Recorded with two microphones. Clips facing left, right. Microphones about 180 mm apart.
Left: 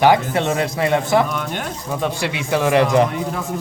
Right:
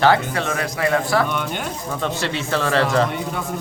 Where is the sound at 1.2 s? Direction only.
Centre (ahead or behind).